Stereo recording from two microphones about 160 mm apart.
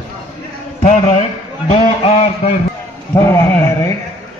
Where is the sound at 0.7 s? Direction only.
45° left (ahead or behind).